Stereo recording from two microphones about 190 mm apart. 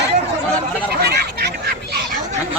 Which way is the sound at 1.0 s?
60° right (ahead or behind).